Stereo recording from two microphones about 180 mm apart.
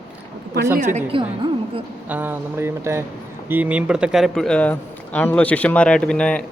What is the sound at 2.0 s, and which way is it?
Speech, 10° right (ahead or behind).